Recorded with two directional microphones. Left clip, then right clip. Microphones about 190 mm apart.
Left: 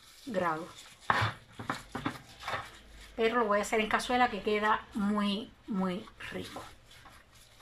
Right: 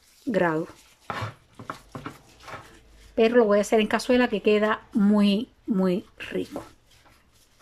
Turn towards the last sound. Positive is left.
turn(degrees=-45)  # may be behind; listen again after turning